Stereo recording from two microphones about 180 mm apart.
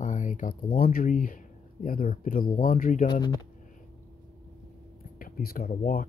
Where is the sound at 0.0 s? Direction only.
45° left (ahead or behind).